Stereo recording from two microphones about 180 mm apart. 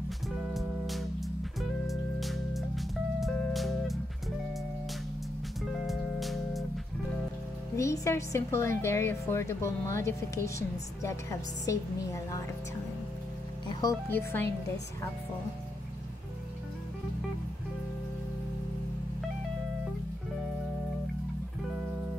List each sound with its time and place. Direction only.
0.5 s music: centre (ahead or behind)
5.9 s music: centre (ahead or behind)
7.7 s a woman's voice: 15° left (ahead or behind)
13.7 s music: 25° left (ahead or behind)
14.1 s a woman's voice: 10° left (ahead or behind)